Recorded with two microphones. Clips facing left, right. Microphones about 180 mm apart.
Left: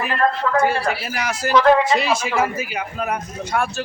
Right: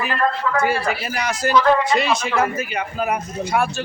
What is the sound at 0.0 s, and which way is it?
Speech, 5° right (ahead or behind).